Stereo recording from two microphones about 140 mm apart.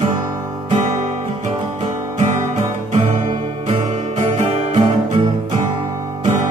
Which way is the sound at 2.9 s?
60° right (ahead or behind).